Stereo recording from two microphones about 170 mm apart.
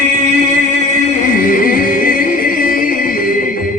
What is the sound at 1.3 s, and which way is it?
Music, 55° left (ahead or behind).